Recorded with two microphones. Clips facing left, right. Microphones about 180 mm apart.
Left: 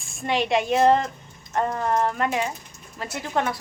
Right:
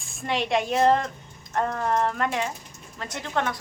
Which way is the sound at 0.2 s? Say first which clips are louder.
Left 2 dB; centre (ahead or behind).